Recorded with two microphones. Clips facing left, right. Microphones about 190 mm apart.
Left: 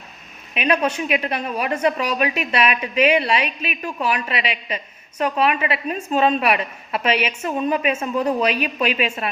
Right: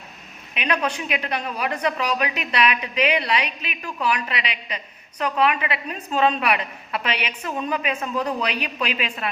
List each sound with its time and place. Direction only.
0.7 s a woman's voice: 25° left (ahead or behind)
3.4 s a woman's voice: 20° right (ahead or behind)
3.8 s a woman's voice: 25° left (ahead or behind)